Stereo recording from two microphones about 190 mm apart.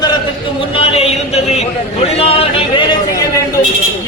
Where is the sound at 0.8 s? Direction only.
30° left (ahead or behind).